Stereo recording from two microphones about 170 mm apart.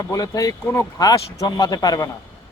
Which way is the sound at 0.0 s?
20° left (ahead or behind).